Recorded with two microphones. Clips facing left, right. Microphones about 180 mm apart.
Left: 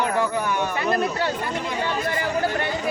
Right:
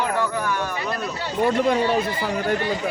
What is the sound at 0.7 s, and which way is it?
Speech, 60° left (ahead or behind).